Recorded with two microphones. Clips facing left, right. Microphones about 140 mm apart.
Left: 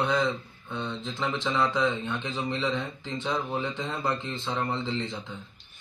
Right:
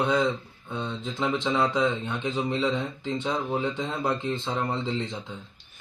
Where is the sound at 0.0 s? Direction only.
15° right (ahead or behind).